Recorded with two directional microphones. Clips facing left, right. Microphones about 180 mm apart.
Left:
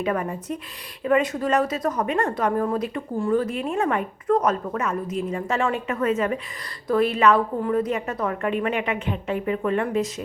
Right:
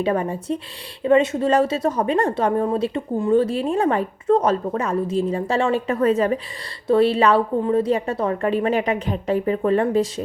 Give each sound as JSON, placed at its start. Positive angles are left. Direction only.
{"t": 0.0, "sound": "a woman's voice", "side_deg": -30}